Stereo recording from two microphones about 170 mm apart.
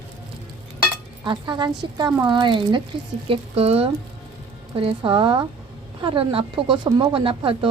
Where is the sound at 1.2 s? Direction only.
25° right (ahead or behind).